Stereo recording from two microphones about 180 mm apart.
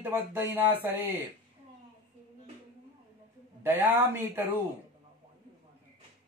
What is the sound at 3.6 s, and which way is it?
Speech, 10° right (ahead or behind).